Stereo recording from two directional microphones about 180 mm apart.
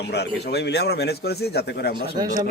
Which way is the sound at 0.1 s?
65° left (ahead or behind).